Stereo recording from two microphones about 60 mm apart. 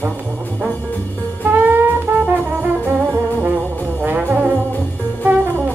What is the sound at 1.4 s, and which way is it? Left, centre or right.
Music, right.